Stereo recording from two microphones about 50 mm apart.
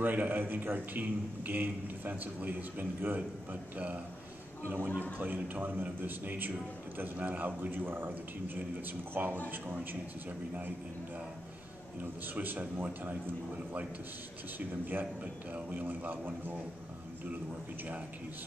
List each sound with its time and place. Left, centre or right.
0.0 s a man's voice: right
4.6 s a man's voice: right
12.0 s a man's voice: right
15.5 s a man's voice: right